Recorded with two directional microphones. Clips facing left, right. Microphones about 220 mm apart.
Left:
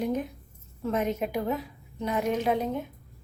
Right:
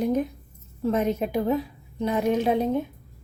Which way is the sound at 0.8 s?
35° right (ahead or behind).